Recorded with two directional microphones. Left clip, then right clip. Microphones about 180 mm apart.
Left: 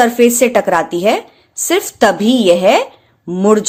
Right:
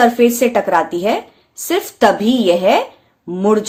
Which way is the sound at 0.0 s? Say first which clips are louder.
Left 2 dB; 30° left (ahead or behind).